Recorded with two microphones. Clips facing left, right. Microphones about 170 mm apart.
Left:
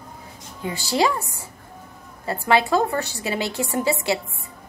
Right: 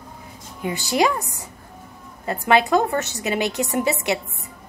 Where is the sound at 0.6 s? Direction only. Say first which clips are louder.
Right 1 dB; 15° right (ahead or behind).